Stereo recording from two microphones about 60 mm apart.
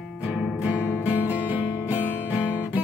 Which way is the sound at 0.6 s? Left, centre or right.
Right.